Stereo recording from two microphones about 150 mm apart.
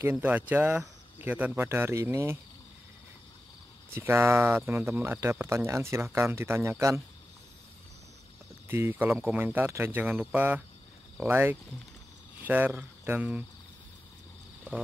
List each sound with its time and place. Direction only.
0.0 s speech: 10° right (ahead or behind)
3.9 s speech: 15° right (ahead or behind)
8.6 s speech: 15° right (ahead or behind)